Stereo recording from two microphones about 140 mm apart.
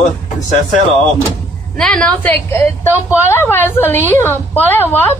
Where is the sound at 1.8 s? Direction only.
5° left (ahead or behind).